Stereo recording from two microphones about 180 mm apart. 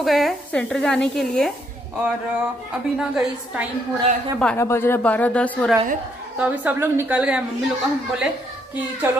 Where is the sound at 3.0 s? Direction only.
5° right (ahead or behind).